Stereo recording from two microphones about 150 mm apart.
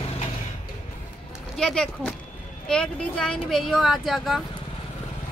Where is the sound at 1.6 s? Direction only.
5° left (ahead or behind).